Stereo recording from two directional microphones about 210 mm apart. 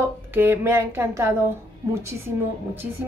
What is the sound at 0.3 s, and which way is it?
A woman's voice, 10° right (ahead or behind).